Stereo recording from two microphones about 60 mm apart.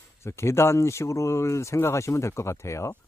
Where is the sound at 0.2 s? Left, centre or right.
Left.